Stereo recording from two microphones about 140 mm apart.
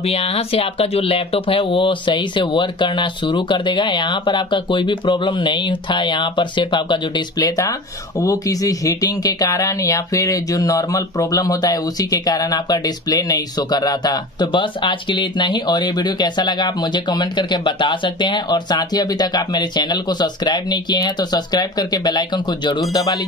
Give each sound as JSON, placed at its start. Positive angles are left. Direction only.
{"t": 0.0, "sound": "speech", "side_deg": 45}